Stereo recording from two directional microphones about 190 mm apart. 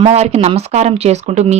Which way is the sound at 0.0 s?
35° right (ahead or behind).